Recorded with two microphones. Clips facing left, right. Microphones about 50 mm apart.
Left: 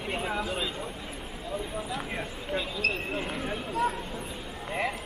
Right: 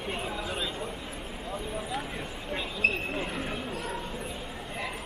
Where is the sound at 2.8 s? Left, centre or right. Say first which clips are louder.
Right 3 dB; centre.